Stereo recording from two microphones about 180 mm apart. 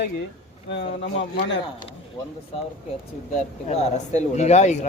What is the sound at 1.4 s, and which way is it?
Speech, 80° left.